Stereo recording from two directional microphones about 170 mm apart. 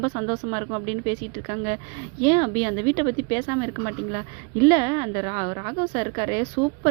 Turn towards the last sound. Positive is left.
turn(degrees=-25)  # may be behind; listen again after turning